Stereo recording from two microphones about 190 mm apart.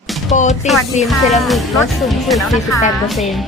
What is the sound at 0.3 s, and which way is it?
Speech, 35° left (ahead or behind).